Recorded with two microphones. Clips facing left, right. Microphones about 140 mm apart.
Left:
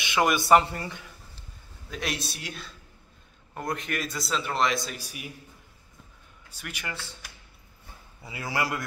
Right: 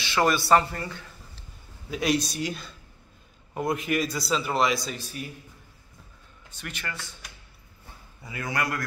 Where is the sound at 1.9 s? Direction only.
Centre (ahead or behind).